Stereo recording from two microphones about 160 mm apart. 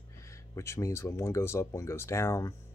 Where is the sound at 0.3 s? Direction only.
20° left (ahead or behind).